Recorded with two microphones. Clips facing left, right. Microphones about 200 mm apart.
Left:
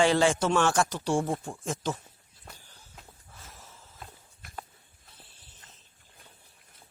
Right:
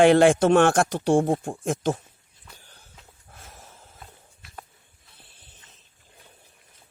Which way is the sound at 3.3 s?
55° right (ahead or behind).